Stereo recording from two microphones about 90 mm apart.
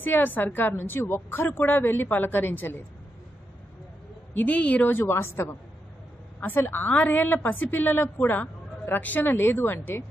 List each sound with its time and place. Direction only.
0.0 s a woman's voice: 20° left (ahead or behind)
4.3 s a woman's voice: 15° left (ahead or behind)